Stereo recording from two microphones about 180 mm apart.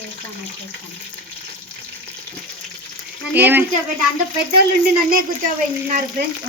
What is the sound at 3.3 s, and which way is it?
Speech, 10° right (ahead or behind).